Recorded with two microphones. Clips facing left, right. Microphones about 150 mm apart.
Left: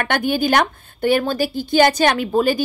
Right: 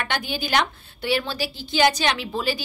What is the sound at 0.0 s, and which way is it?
A woman's voice, 55° left (ahead or behind).